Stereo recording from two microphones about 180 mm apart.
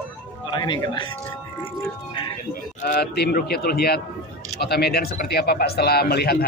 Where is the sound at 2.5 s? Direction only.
50° left (ahead or behind).